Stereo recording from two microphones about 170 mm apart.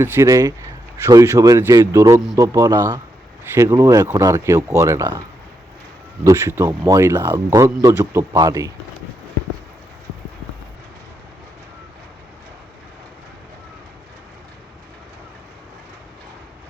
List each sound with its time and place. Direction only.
0.0 s a man's voice: 15° right (ahead or behind)
6.2 s speech: 15° right (ahead or behind)